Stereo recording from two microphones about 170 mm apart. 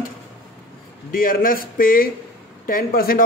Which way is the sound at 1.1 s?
55° left (ahead or behind).